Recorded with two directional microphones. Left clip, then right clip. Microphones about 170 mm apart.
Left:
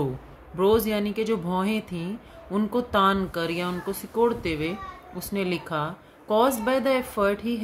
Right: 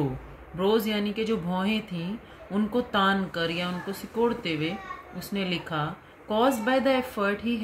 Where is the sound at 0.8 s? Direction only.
60° left (ahead or behind).